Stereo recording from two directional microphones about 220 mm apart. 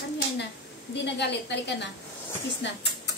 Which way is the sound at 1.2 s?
50° left (ahead or behind).